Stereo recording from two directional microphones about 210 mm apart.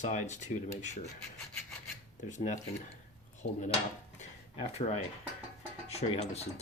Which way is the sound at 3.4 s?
35° left (ahead or behind).